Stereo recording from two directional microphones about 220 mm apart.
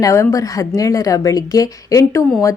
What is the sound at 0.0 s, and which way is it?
Speech, 15° left (ahead or behind).